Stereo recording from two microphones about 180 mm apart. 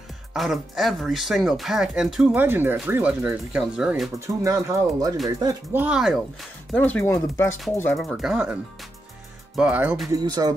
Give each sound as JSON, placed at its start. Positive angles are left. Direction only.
{"t": 0.3, "sound": "speech", "side_deg": 0}
{"t": 4.4, "sound": "speech", "side_deg": -15}
{"t": 6.7, "sound": "speech", "side_deg": 10}
{"t": 8.0, "sound": "speech", "side_deg": 0}
{"t": 9.6, "sound": "speech", "side_deg": -10}
{"t": 10.1, "sound": "speech", "side_deg": -20}